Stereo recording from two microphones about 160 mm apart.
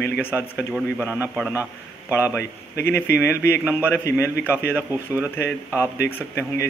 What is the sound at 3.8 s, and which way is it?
Speech, 10° left (ahead or behind).